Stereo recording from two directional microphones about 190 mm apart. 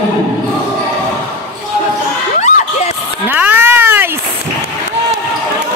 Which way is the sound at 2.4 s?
35° left (ahead or behind).